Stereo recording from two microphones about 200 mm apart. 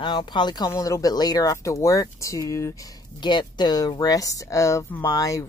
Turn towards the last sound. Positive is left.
turn(degrees=15)  # may be behind; listen again after turning